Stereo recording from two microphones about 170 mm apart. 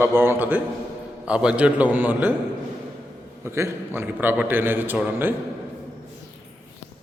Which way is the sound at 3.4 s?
15° right (ahead or behind).